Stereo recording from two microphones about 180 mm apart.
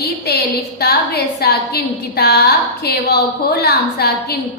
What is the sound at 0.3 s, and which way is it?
A woman's voice, 60° left (ahead or behind).